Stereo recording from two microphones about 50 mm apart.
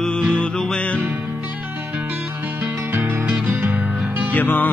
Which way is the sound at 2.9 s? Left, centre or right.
Right.